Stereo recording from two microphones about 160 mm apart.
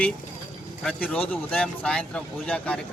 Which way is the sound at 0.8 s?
5° left (ahead or behind).